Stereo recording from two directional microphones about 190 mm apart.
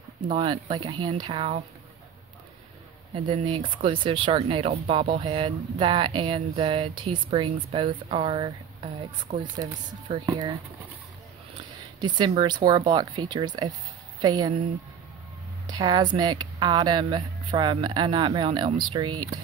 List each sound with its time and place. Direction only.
0.2 s speech: 25° right (ahead or behind)
3.3 s speech: 25° right (ahead or behind)
12.0 s speech: 25° right (ahead or behind)
15.6 s speech: 20° right (ahead or behind)